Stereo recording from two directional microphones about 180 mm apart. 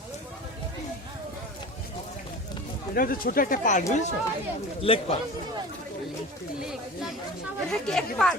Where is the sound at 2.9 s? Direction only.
55° left (ahead or behind).